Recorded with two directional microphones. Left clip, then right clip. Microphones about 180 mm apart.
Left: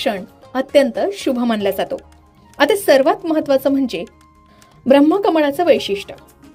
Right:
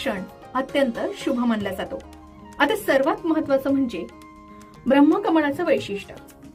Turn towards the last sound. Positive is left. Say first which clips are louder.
# left 8 dB
turn(degrees=40)  # may be behind; listen again after turning